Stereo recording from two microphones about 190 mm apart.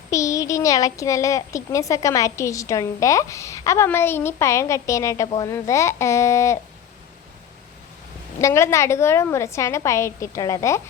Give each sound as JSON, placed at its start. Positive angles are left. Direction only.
{"t": 0.1, "sound": "a child's voice", "side_deg": 15}
{"t": 8.4, "sound": "a child's voice", "side_deg": 15}